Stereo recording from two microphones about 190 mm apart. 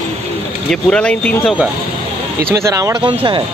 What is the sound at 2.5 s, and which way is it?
Speech, 15° right (ahead or behind).